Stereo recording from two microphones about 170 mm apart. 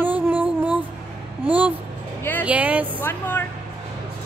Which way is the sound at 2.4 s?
10° right (ahead or behind).